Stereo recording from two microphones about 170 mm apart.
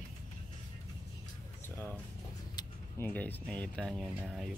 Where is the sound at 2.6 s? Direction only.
25° left (ahead or behind).